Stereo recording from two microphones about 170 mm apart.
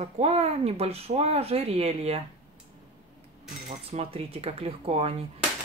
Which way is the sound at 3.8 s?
35° right (ahead or behind).